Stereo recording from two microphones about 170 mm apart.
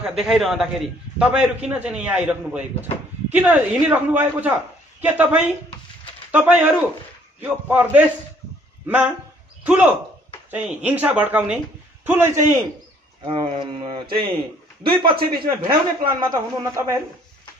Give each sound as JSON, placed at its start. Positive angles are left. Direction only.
{"t": 0.2, "sound": "a man's voice", "side_deg": 0}
{"t": 13.2, "sound": "a man's voice", "side_deg": -30}
{"t": 15.1, "sound": "speech", "side_deg": -65}
{"t": 15.6, "sound": "a man's voice", "side_deg": -25}